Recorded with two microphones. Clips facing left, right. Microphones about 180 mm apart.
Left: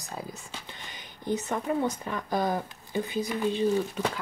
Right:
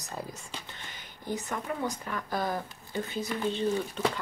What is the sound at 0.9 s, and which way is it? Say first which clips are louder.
Speech: left 5 dB; 20° left (ahead or behind).